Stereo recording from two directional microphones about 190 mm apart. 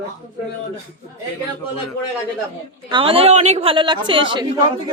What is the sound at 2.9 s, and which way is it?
A woman's voice, 25° right (ahead or behind).